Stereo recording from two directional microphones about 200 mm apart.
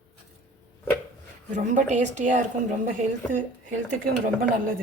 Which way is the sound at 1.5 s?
35° right (ahead or behind).